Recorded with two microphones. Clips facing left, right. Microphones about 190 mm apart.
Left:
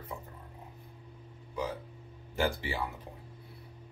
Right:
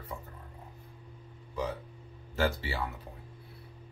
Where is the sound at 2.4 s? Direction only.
15° left (ahead or behind).